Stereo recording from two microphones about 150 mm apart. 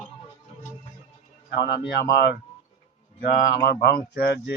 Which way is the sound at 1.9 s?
90° left.